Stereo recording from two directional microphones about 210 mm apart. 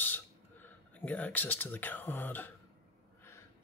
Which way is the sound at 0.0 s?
10° left (ahead or behind).